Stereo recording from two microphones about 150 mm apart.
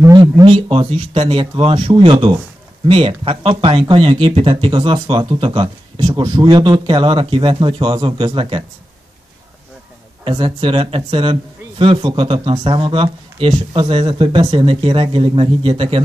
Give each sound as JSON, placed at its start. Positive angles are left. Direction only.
{"t": 0.0, "sound": "speech", "side_deg": -25}
{"t": 10.2, "sound": "speech", "side_deg": -35}